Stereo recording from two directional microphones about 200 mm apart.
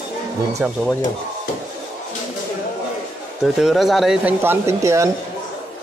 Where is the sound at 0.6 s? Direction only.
5° right (ahead or behind).